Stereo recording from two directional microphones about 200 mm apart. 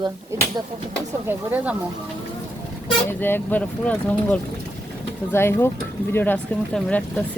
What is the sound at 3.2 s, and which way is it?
Speech, 10° left (ahead or behind).